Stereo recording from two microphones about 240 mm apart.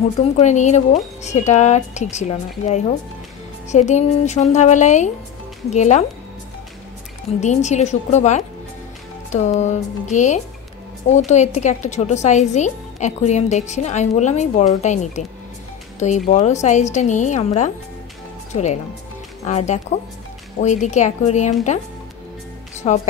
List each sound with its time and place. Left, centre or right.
0.2 s speech: left
7.3 s speech: left
22.8 s speech: left